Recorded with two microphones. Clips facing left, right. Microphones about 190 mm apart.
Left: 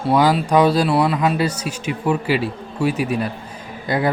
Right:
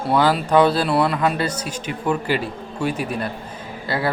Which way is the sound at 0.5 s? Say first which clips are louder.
Even; 10° left (ahead or behind).